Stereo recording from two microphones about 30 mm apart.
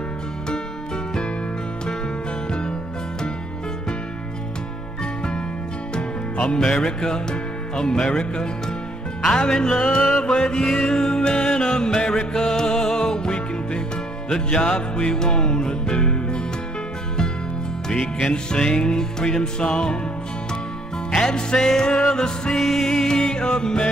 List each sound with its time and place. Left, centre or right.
5.9 s music: left
14.3 s music: left
18.3 s music: left
21.1 s music: left
22.6 s music: centre
23.0 s music: left